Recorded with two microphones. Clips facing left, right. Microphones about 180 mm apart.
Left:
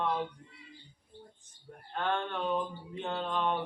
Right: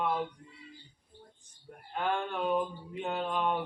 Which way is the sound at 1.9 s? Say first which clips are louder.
Right 1 dB; 10° right (ahead or behind).